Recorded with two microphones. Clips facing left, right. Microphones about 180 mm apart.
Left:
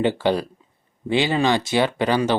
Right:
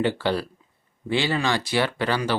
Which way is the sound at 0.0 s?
20° left (ahead or behind).